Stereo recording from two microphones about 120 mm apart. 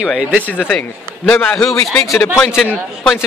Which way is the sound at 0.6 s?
10° left (ahead or behind).